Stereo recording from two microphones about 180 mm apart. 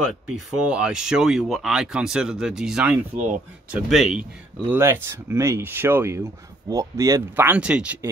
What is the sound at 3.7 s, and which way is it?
Speech, 5° right (ahead or behind).